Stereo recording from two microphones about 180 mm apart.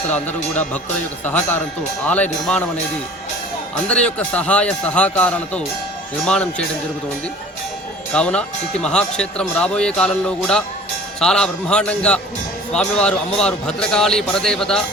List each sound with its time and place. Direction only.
0.1 s a man's voice: 10° left (ahead or behind)
3.8 s a man's voice: 5° left (ahead or behind)
8.1 s speech: 5° left (ahead or behind)